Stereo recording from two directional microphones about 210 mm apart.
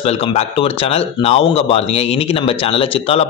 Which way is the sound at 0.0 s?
30° left (ahead or behind).